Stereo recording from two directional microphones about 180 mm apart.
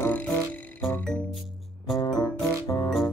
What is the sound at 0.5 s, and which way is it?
Frog, 10° left (ahead or behind).